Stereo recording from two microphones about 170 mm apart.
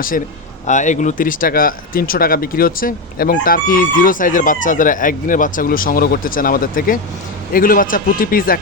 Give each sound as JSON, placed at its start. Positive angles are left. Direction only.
{"t": 0.7, "sound": "speech", "side_deg": 45}